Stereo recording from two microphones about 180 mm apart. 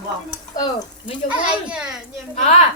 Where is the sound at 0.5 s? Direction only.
25° left (ahead or behind).